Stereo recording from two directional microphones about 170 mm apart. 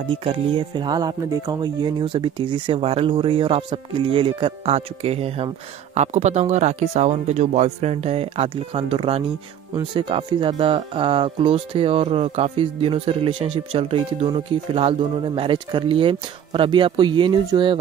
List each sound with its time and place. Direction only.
0.1 s speech: 35° right (ahead or behind)